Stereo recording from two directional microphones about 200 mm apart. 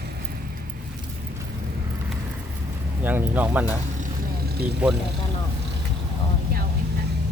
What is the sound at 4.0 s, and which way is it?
Vehicle, 50° right (ahead or behind).